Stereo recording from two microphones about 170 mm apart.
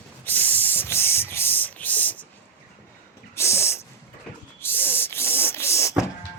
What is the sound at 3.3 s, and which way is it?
Snort, 15° left (ahead or behind).